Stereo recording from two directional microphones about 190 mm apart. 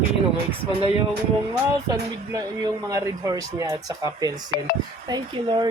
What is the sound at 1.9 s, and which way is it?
Speech, 20° right (ahead or behind).